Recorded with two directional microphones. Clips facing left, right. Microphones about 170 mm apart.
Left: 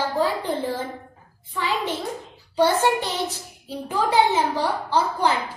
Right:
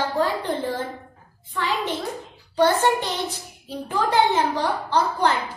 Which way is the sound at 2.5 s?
10° left (ahead or behind).